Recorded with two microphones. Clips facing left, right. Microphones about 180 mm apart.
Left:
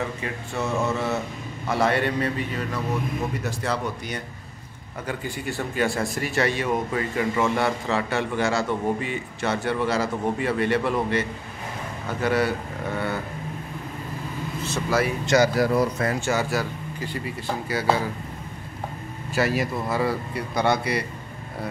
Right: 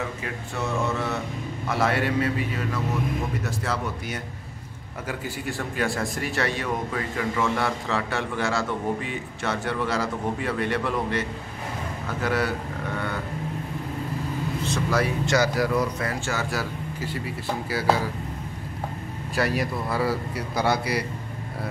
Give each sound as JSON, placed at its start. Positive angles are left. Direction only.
{"t": 0.2, "sound": "a man's voice", "side_deg": 0}
{"t": 7.2, "sound": "speech", "side_deg": 15}
{"t": 7.6, "sound": "a man's voice", "side_deg": 0}
{"t": 14.7, "sound": "vehicle", "side_deg": 5}
{"t": 15.2, "sound": "speech", "side_deg": 20}
{"t": 16.4, "sound": "a man's voice", "side_deg": 0}
{"t": 19.3, "sound": "a man's voice", "side_deg": 0}